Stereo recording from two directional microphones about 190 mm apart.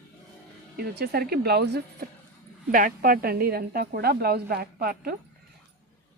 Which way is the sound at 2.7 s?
50° right (ahead or behind).